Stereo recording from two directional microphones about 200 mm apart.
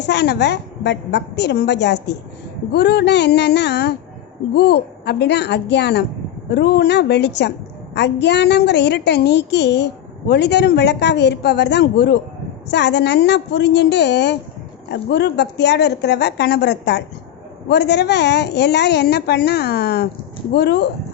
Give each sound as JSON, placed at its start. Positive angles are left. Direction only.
{"t": 0.0, "sound": "a woman's voice", "side_deg": 60}